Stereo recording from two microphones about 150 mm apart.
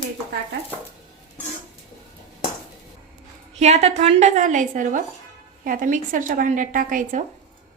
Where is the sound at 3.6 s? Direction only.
45° right (ahead or behind).